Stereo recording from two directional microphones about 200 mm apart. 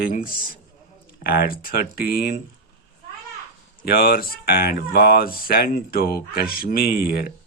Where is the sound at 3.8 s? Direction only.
50° left (ahead or behind).